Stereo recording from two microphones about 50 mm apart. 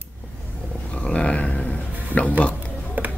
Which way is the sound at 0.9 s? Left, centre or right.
Left.